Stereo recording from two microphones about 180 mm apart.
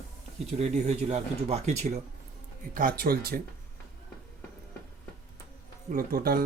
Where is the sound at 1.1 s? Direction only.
35° right (ahead or behind).